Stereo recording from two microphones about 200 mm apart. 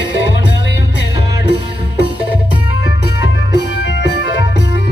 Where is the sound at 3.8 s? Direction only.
60° left (ahead or behind).